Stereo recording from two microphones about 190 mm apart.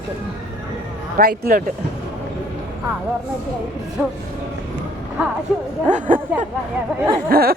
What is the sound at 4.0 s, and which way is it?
Speech, 10° right (ahead or behind).